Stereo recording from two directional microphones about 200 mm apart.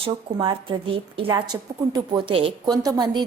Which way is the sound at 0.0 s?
25° right (ahead or behind).